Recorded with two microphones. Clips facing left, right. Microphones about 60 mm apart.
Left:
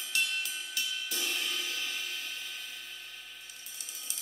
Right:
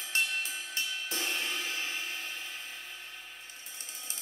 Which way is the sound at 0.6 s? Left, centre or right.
Right.